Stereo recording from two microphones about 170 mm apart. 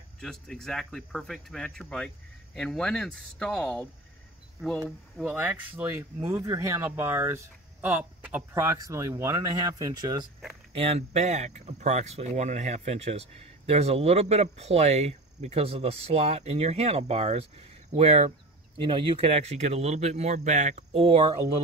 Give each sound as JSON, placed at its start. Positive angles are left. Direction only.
{"t": 0.2, "sound": "speech", "side_deg": 5}
{"t": 5.1, "sound": "speech", "side_deg": -10}
{"t": 10.7, "sound": "speech", "side_deg": -35}